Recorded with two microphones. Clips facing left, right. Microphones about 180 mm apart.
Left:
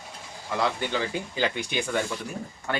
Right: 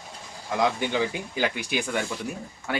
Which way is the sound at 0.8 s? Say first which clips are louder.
Right 2 dB; 10° right (ahead or behind).